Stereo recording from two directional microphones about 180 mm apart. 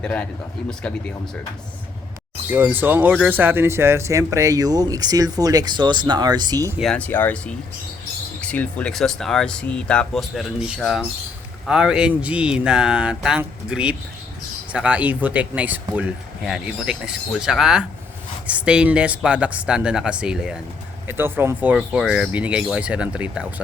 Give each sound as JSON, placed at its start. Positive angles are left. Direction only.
{"t": 0.0, "sound": "speech", "side_deg": 5}
{"t": 2.5, "sound": "speech", "side_deg": -10}
{"t": 6.7, "sound": "speech", "side_deg": 5}